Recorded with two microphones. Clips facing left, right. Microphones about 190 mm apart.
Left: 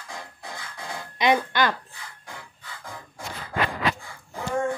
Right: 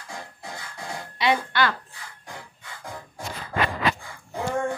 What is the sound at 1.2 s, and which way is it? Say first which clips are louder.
Speech: left 2 dB; 20° left (ahead or behind).